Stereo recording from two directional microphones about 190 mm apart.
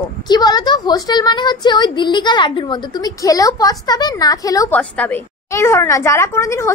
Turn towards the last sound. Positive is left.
turn(degrees=15)  # may be behind; listen again after turning